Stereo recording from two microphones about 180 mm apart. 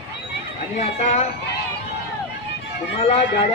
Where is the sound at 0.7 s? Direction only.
40° left (ahead or behind).